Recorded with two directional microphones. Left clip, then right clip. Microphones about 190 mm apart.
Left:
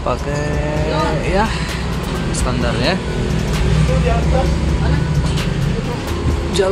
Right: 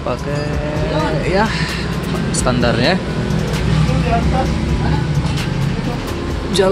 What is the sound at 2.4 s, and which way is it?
Speech, 15° right (ahead or behind).